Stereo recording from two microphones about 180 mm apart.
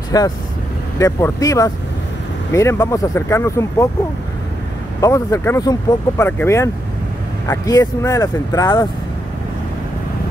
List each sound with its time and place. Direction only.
0.1 s speech: 20° left (ahead or behind)
5.0 s speech: 15° left (ahead or behind)